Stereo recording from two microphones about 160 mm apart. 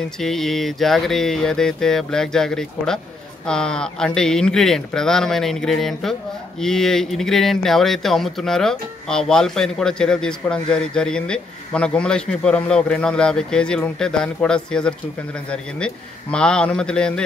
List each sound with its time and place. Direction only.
0.2 s speech: centre (ahead or behind)